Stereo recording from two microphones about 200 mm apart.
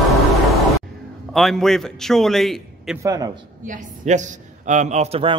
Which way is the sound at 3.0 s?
15° right (ahead or behind).